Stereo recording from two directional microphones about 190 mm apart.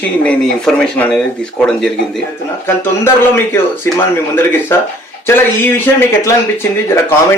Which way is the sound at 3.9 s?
15° left (ahead or behind).